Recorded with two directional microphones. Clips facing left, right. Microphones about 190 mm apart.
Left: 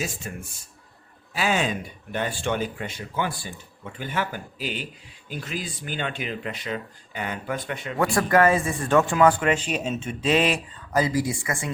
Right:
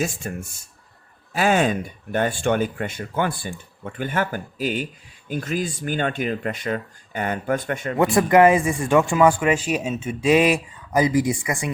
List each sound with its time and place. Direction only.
0.2 s speech: 45° right (ahead or behind)
7.9 s speech: 20° right (ahead or behind)